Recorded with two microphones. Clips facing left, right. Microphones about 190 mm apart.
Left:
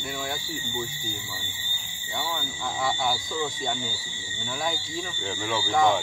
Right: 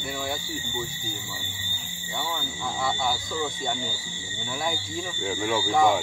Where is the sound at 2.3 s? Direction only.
Centre (ahead or behind).